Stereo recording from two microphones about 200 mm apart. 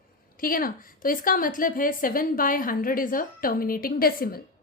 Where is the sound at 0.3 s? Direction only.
45° left (ahead or behind).